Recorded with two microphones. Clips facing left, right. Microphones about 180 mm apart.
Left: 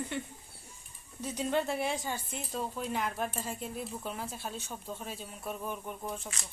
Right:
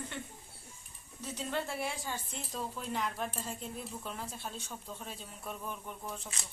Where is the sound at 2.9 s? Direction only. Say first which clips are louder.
Left 1 dB; 5° left (ahead or behind).